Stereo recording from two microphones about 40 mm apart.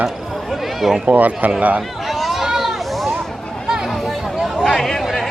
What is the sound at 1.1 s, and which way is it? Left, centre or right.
Speech, right.